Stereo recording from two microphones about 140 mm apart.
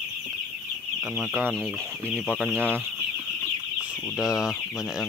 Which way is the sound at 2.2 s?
10° right (ahead or behind).